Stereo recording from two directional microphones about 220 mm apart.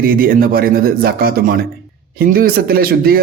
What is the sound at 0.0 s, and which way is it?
A man's voice, 40° right (ahead or behind).